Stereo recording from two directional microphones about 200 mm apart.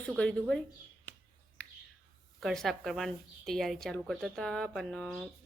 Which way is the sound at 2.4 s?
Centre (ahead or behind).